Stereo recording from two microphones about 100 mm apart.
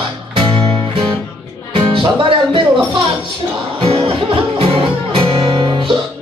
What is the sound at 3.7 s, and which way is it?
Music, 75° right (ahead or behind).